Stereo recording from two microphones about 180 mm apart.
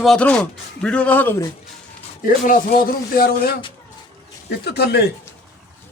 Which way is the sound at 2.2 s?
50° left (ahead or behind).